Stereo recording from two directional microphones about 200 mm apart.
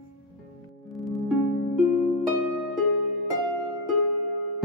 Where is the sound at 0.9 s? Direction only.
Centre (ahead or behind).